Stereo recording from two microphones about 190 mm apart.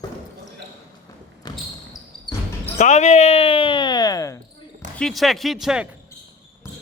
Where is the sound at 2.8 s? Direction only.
40° left (ahead or behind); by 4.3 s 20° left (ahead or behind).